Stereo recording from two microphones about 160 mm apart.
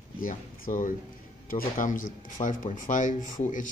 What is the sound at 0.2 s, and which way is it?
Speech, 55° left (ahead or behind).